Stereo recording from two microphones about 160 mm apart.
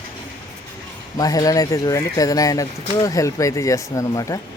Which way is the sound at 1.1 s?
25° left (ahead or behind).